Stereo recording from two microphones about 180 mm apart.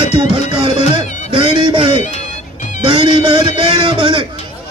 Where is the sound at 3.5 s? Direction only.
30° right (ahead or behind).